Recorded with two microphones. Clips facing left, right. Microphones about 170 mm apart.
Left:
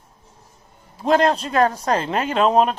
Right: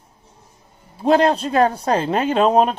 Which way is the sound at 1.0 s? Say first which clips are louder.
Right 2 dB; 35° right (ahead or behind).